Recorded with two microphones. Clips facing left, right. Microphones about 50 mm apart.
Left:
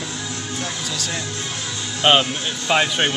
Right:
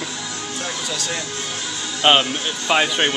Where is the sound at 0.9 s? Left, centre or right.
Centre.